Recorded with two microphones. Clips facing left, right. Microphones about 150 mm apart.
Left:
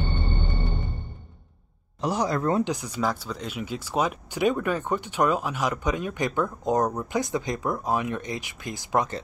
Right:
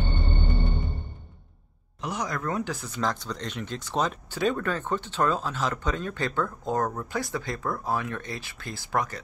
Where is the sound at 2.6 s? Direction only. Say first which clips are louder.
Left 3 dB; 15° left (ahead or behind).